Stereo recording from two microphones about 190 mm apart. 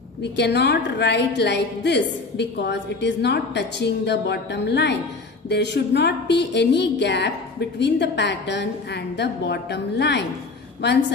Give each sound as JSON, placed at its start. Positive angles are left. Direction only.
{"t": 0.2, "sound": "a woman's voice", "side_deg": 65}